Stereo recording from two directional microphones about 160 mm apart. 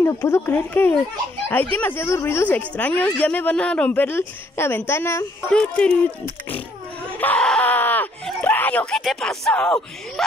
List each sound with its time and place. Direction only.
0.0 s speech: 15° left (ahead or behind)
5.5 s speech: 5° left (ahead or behind)
7.2 s groan: 10° left (ahead or behind)
8.4 s a sound: 10° left (ahead or behind)
9.0 s speech: centre (ahead or behind)